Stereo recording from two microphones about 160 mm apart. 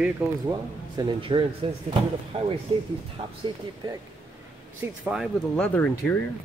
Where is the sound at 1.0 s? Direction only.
30° right (ahead or behind).